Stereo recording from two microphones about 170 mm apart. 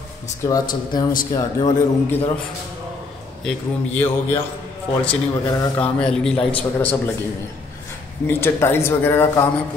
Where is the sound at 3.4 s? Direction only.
10° left (ahead or behind).